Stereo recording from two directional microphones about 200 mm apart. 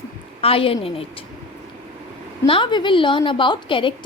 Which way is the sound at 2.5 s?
25° left (ahead or behind).